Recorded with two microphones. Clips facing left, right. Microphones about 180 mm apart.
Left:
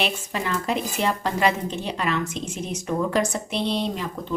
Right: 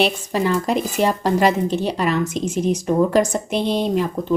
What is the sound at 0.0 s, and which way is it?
Speech, 35° right (ahead or behind).